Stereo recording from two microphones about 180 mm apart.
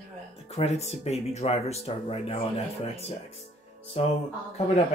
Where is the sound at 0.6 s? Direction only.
35° left (ahead or behind).